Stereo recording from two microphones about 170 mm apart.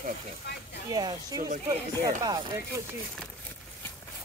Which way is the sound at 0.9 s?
20° right (ahead or behind).